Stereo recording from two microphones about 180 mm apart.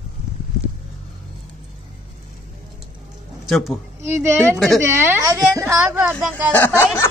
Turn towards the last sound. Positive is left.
turn(degrees=10)  # may be behind; listen again after turning